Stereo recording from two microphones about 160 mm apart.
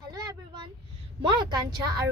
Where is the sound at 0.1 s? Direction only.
25° right (ahead or behind).